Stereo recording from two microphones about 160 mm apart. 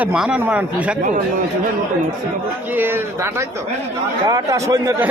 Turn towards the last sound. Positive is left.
turn(degrees=-20)  # may be behind; listen again after turning